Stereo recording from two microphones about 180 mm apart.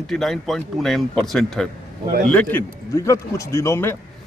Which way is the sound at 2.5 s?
15° left (ahead or behind).